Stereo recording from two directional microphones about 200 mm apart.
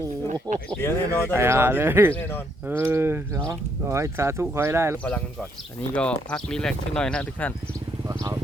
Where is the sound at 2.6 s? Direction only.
10° right (ahead or behind).